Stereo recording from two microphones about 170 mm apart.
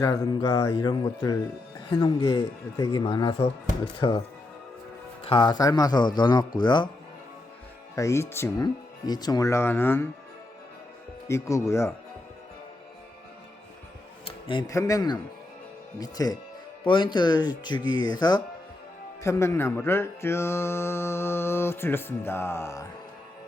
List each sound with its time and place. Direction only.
0.0 s speech: 20° left (ahead or behind)
5.2 s speech: 30° left (ahead or behind)
7.9 s mantra: 15° left (ahead or behind)
11.3 s mantra: 15° left (ahead or behind)
14.3 s music: 30° left (ahead or behind)
14.7 s speech: 20° left (ahead or behind)
19.2 s mantra: 15° left (ahead or behind)